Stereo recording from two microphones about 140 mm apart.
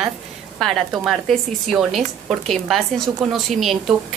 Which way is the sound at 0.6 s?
Centre (ahead or behind).